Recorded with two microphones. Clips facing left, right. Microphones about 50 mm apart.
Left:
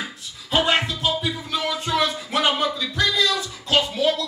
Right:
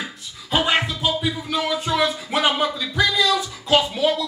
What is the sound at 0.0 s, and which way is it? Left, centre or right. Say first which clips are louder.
Music: even; centre.